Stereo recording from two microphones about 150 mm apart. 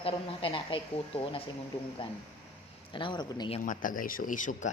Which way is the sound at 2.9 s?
35° left (ahead or behind).